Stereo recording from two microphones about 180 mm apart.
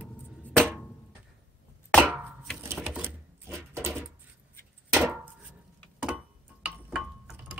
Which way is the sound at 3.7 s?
15° right (ahead or behind).